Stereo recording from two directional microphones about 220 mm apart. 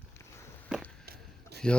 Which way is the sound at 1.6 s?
5° left (ahead or behind).